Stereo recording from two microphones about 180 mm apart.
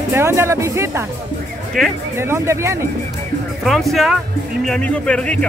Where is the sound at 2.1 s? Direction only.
15° right (ahead or behind).